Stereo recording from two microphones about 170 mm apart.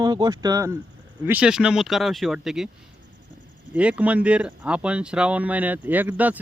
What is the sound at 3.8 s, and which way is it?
Speech, 5° right (ahead or behind).